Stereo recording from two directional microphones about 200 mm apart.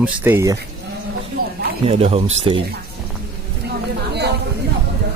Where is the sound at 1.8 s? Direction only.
30° right (ahead or behind).